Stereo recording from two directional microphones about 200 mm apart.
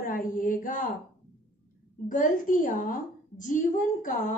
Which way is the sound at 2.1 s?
40° left (ahead or behind).